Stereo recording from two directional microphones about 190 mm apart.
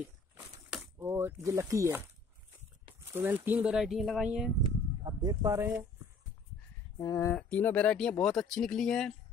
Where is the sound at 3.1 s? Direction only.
10° right (ahead or behind).